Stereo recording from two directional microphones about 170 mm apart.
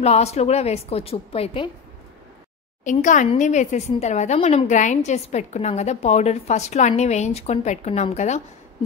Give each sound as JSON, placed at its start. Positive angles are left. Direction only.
{"t": 0.0, "sound": "a woman's voice", "side_deg": 40}
{"t": 2.8, "sound": "a woman's voice", "side_deg": 50}